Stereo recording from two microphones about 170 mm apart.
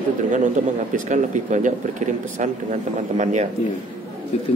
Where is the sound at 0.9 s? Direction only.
45° right (ahead or behind).